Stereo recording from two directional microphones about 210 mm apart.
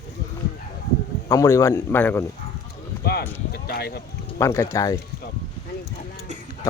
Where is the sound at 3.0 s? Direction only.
50° left (ahead or behind).